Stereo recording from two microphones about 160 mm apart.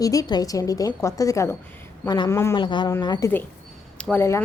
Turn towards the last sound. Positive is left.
turn(degrees=15)  # may be behind; listen again after turning